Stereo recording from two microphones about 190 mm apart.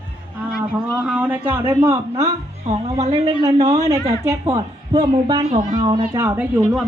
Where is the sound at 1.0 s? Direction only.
10° right (ahead or behind).